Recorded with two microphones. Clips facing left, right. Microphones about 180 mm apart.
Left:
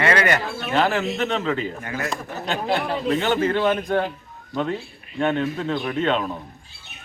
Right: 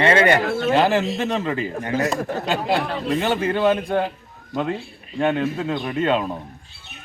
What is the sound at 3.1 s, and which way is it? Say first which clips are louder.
Speech: left 1 dB; 10° right (ahead or behind).